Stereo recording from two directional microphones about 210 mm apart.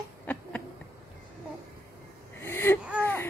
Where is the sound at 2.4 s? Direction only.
10° left (ahead or behind).